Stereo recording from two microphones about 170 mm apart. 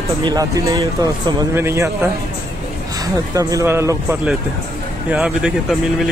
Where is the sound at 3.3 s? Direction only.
15° right (ahead or behind).